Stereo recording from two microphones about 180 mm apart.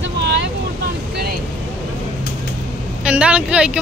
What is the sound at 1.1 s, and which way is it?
Vehicle, 60° right (ahead or behind).